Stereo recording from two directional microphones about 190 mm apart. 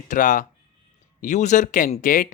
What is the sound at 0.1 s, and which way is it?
Speech, 40° left (ahead or behind).